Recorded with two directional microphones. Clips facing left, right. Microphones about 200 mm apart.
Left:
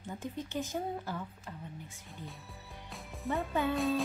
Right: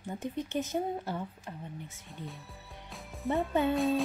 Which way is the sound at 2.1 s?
Centre (ahead or behind).